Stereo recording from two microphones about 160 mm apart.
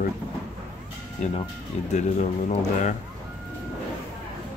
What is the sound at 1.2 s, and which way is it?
Speech, 45° left (ahead or behind).